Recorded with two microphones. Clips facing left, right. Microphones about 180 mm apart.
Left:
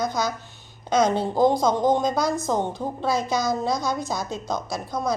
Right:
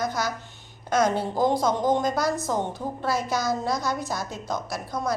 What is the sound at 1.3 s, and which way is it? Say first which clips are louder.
A woman's voice: left 3 dB; 15° left (ahead or behind).